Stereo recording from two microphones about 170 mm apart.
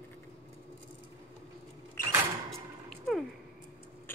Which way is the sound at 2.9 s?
Centre (ahead or behind).